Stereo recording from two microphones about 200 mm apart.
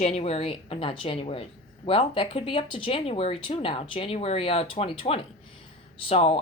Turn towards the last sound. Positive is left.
turn(degrees=30)  # may be behind; listen again after turning